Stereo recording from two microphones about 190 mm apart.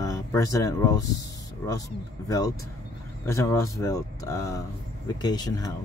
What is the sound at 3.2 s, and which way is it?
Speech, 15° left (ahead or behind).